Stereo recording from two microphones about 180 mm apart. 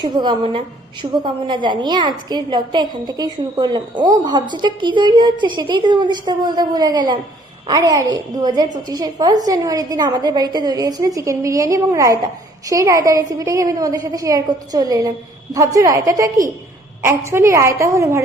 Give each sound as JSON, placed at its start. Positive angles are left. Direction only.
{"t": 0.2, "sound": "a woman's voice", "side_deg": -25}